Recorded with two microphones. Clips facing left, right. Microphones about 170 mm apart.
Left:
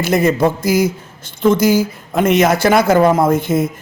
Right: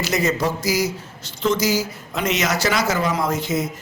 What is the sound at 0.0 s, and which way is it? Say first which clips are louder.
A man's voice: left 7 dB; 55° left (ahead or behind).